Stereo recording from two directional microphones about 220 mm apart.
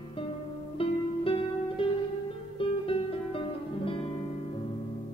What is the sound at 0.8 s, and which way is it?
Music, 25° left (ahead or behind).